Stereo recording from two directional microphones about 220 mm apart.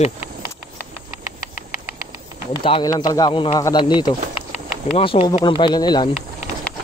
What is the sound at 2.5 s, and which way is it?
Speech, 20° left (ahead or behind).